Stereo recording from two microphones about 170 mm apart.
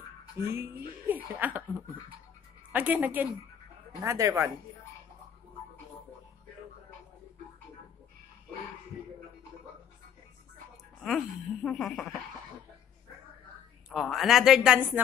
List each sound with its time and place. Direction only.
0.4 s speech: 15° right (ahead or behind)
2.7 s speech: 10° right (ahead or behind)
11.0 s speech: centre (ahead or behind)
13.8 s speech: centre (ahead or behind)